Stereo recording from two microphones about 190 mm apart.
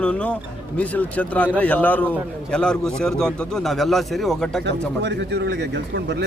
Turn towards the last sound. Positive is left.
turn(degrees=-65)  # may be behind; listen again after turning